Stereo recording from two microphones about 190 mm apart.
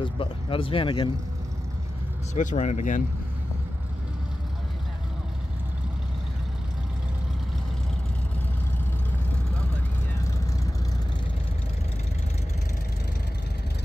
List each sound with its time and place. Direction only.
0.0 s speech: 25° left (ahead or behind)
2.3 s speech: 40° left (ahead or behind)